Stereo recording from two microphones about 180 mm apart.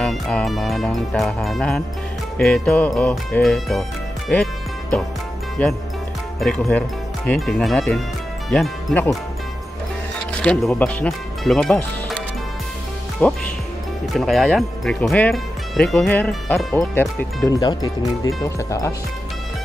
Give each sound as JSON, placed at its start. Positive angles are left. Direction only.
{"t": 0.0, "sound": "speech", "side_deg": 5}
{"t": 6.4, "sound": "speech", "side_deg": 5}
{"t": 10.3, "sound": "speech", "side_deg": 5}
{"t": 13.2, "sound": "speech", "side_deg": 10}
{"t": 17.5, "sound": "speech", "side_deg": 20}